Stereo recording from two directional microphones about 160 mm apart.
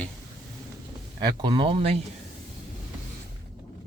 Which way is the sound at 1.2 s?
25° right (ahead or behind).